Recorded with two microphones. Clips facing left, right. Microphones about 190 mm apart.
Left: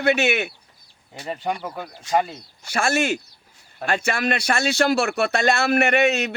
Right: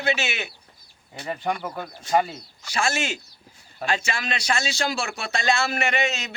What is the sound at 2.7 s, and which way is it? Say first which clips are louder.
Speech: left 5 dB; 55° left (ahead or behind).